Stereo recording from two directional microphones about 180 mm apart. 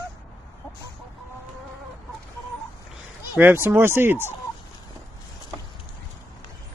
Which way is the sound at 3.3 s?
10° right (ahead or behind).